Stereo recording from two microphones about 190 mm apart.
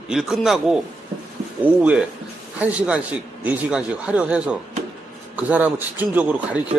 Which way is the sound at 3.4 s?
5° right (ahead or behind).